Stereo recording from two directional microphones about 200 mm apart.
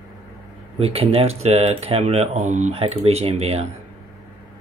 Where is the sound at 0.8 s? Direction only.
30° right (ahead or behind).